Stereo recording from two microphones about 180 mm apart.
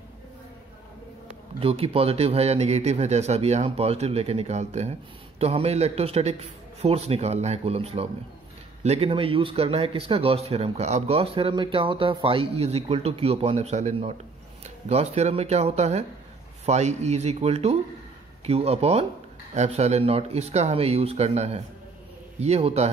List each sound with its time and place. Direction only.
1.6 s speech: 30° right (ahead or behind)